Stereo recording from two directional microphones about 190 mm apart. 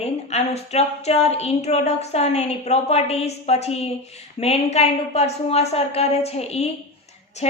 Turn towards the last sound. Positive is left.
turn(degrees=35)  # may be behind; listen again after turning